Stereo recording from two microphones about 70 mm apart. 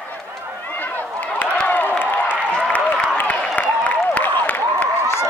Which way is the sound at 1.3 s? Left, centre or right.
Left.